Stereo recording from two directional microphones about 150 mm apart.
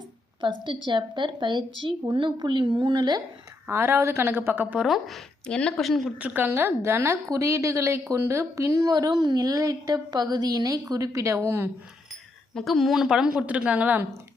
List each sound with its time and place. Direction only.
0.4 s a woman's voice: 30° right (ahead or behind)
3.7 s a woman's voice: 15° right (ahead or behind)
12.5 s a woman's voice: centre (ahead or behind)